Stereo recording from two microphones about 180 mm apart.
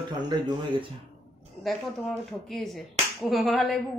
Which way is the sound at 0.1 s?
25° right (ahead or behind).